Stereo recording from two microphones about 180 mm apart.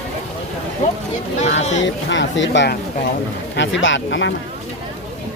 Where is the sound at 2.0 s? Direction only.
85° left.